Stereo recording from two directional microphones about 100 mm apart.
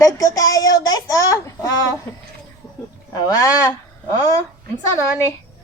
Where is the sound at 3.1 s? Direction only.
35° left (ahead or behind).